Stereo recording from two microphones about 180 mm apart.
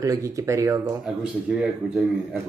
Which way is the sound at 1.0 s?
Centre (ahead or behind).